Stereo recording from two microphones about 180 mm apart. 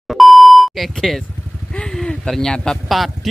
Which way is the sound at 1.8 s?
5° left (ahead or behind).